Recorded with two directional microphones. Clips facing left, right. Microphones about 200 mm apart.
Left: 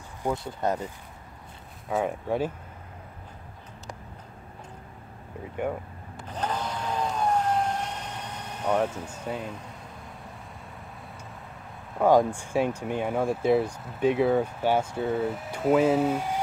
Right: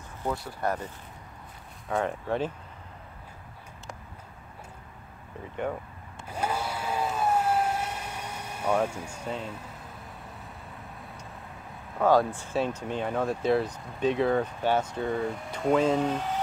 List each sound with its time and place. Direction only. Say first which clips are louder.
0.2 s speech: left 2 dB; 20° left (ahead or behind)
1.9 s speech: left 1 dB; 5° left (ahead or behind)
6.2 s vehicle: even; 10° right (ahead or behind)
12.0 s speech: left 2 dB; 15° left (ahead or behind)